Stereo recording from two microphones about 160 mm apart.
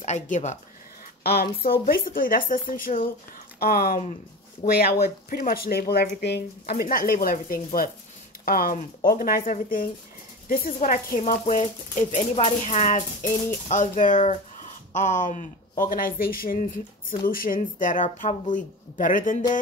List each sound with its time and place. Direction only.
0.0 s speech: 45° left (ahead or behind)
1.2 s speech: 75° left (ahead or behind); by 19.4 s 55° left (ahead or behind)